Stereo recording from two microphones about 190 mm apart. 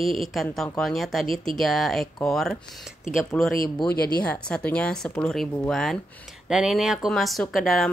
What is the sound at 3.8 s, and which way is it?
Speech, 55° left (ahead or behind).